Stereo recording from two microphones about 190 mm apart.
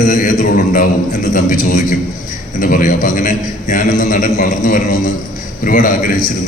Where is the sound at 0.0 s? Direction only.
45° left (ahead or behind).